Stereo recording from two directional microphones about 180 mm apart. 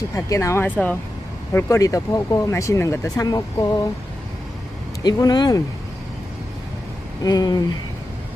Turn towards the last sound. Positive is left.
turn(degrees=20)  # may be behind; listen again after turning